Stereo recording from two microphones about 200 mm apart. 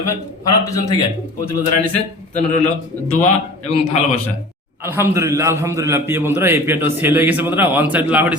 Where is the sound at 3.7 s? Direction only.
30° left (ahead or behind).